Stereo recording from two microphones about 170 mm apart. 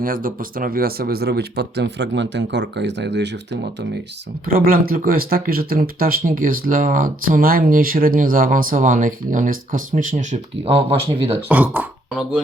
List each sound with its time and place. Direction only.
0.0 s speech: 55° right (ahead or behind); by 3.8 s 90° right
4.4 s speech: 60° right (ahead or behind)
10.7 s speech: 35° right (ahead or behind)
11.4 s speech: 10° right (ahead or behind)